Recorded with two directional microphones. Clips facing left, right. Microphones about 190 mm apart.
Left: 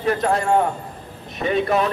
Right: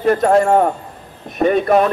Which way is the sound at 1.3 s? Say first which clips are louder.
Right 6 dB; 50° right (ahead or behind).